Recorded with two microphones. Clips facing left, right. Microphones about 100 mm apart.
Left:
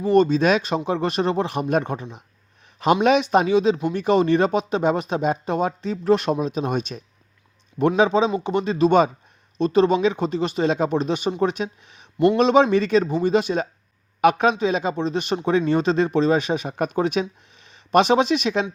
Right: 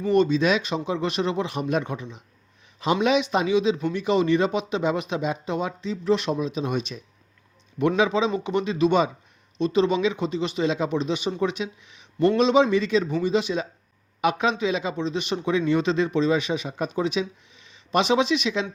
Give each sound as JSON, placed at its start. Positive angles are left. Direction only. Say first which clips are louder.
{"t": 0.1, "sound": "a man's voice", "louder": "left 3 dB", "side_deg": 45}